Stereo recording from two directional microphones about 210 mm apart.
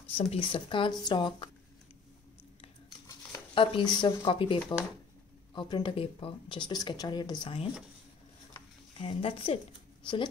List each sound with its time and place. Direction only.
0.2 s speech: 25° left (ahead or behind)
3.5 s speech: 25° left (ahead or behind)
8.5 s a sound: 25° left (ahead or behind)